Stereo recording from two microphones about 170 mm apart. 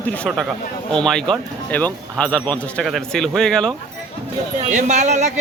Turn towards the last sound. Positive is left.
turn(degrees=-45)  # may be behind; listen again after turning